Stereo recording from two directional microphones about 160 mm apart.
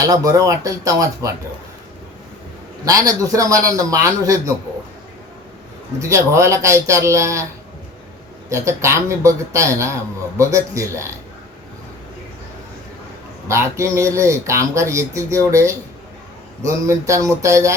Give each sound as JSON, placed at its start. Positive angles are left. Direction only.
{"t": 0.0, "sound": "a man's voice", "side_deg": -20}
{"t": 2.8, "sound": "a man's voice", "side_deg": -20}
{"t": 6.0, "sound": "speech", "side_deg": -20}
{"t": 8.4, "sound": "a man's voice", "side_deg": -20}
{"t": 13.5, "sound": "a man's voice", "side_deg": -20}